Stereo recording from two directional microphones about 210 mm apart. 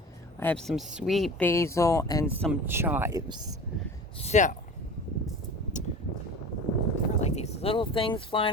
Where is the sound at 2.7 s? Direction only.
10° right (ahead or behind).